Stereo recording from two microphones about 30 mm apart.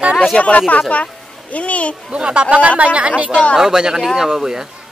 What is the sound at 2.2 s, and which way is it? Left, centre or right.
Speech, right.